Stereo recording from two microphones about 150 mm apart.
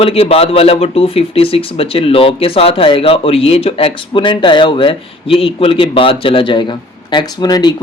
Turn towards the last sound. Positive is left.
turn(degrees=25)  # may be behind; listen again after turning